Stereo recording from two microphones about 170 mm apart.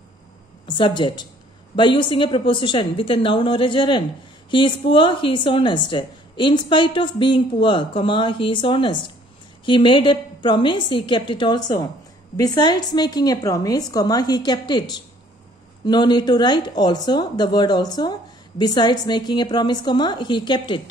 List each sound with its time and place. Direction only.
0.7 s a woman's voice: 25° left (ahead or behind)